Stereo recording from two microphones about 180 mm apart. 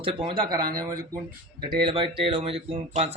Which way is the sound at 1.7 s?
30° right (ahead or behind).